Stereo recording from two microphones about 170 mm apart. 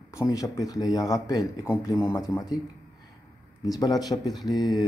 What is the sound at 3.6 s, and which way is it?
Speech, 20° left (ahead or behind).